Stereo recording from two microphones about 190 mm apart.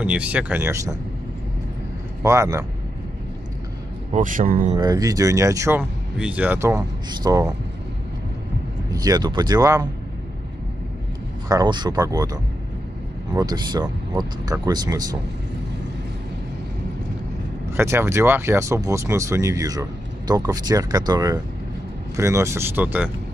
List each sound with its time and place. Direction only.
0.0 s speech: 5° right (ahead or behind)
2.2 s speech: 15° right (ahead or behind)
4.1 s speech: 45° right (ahead or behind)
4.7 s speech: 20° right (ahead or behind)
8.9 s speech: 20° right (ahead or behind)
11.4 s speech: 20° right (ahead or behind)
17.7 s speech: 15° right (ahead or behind)